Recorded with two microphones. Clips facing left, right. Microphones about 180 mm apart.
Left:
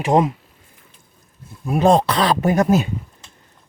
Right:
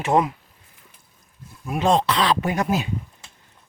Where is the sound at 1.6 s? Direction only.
35° left (ahead or behind).